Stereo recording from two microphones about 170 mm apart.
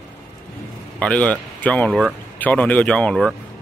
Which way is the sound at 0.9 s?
10° left (ahead or behind).